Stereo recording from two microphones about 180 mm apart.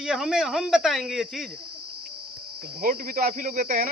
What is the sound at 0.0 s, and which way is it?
Speech, 5° right (ahead or behind).